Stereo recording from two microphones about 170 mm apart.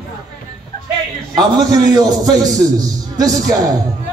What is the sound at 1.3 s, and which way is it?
A man's voice, 25° right (ahead or behind).